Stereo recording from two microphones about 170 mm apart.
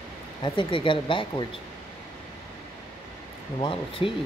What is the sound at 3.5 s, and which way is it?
Speech, 30° left (ahead or behind).